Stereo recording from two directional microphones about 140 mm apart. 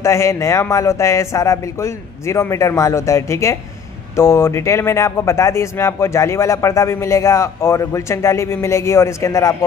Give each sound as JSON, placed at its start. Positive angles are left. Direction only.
{"t": 0.0, "sound": "a man's voice", "side_deg": 20}